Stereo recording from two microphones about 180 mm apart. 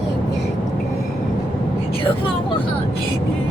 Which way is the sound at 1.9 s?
30° left (ahead or behind).